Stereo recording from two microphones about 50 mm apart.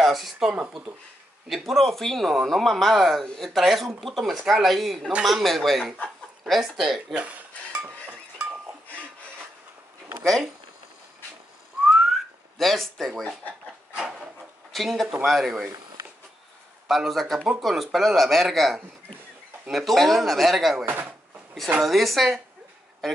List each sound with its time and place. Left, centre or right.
0.0 s speech: centre
7.2 s dishes: right
12.1 s whistling: centre
13.9 s wood: centre
14.7 s speech: centre
16.8 s speech: centre
20.8 s speech: right
21.8 s speech: centre